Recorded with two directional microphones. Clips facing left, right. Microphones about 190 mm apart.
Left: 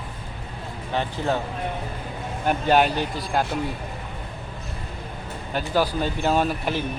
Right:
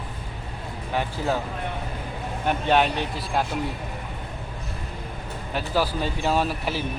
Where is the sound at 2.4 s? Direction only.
Centre (ahead or behind).